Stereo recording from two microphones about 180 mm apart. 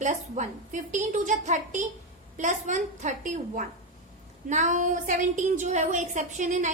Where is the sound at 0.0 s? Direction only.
40° right (ahead or behind).